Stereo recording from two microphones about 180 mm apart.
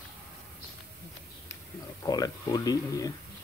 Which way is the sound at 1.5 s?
20° left (ahead or behind).